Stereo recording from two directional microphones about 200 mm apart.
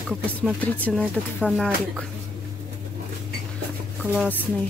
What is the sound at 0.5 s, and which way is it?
Speech, 5° left (ahead or behind).